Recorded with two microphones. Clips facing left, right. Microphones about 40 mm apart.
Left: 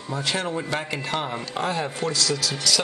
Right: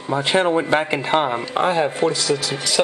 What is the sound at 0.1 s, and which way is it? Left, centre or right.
Speech, right.